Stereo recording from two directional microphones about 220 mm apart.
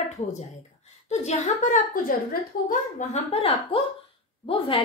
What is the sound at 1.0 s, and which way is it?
A woman's voice, 30° left (ahead or behind).